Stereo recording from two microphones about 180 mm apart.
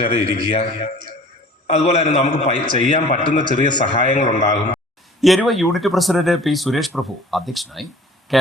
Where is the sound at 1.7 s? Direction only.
35° left (ahead or behind).